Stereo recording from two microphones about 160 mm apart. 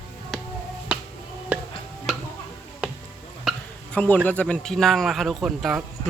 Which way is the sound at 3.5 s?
10° left (ahead or behind).